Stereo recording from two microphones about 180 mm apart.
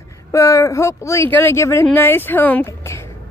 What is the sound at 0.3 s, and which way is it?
Speech, 15° left (ahead or behind).